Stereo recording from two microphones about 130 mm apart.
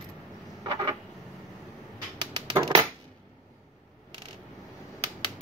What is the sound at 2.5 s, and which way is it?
Coin, 35° right (ahead or behind).